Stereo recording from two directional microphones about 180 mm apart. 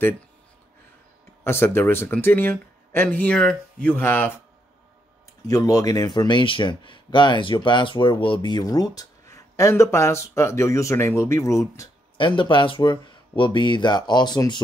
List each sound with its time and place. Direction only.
1.4 s speech: 15° left (ahead or behind)
5.5 s speech: 20° left (ahead or behind)